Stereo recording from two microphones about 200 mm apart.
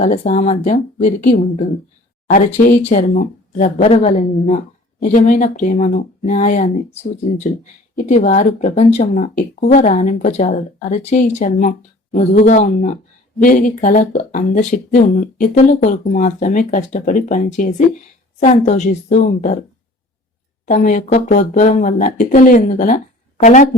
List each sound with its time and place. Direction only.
0.0 s speech: 40° left (ahead or behind)
2.8 s speech: 40° left (ahead or behind)
4.9 s speech: 45° left (ahead or behind)
20.7 s speech: 40° left (ahead or behind)